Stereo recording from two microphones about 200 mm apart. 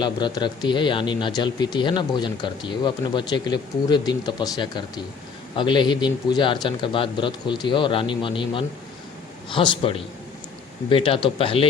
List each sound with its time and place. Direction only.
0.0 s speech: 20° left (ahead or behind)